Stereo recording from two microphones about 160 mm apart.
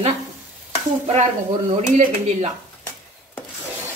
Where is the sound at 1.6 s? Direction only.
40° right (ahead or behind).